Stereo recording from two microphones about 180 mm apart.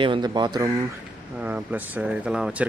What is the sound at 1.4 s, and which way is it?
Speech, 10° right (ahead or behind).